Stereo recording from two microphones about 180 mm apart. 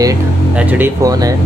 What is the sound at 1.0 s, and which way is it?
Speech, 20° right (ahead or behind).